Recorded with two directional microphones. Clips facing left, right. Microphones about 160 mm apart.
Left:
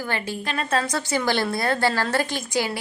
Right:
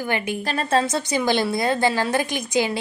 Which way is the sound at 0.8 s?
20° right (ahead or behind).